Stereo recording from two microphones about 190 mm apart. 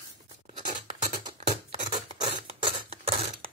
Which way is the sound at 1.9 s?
25° right (ahead or behind).